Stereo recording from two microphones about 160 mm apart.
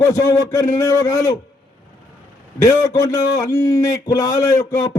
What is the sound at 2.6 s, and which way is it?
A man's voice, 20° left (ahead or behind).